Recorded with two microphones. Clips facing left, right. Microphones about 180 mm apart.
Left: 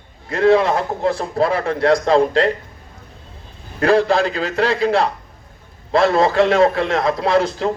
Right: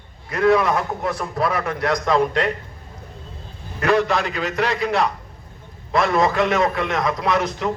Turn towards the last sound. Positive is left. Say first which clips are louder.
# left 4 dB
turn(degrees=30)  # may be behind; listen again after turning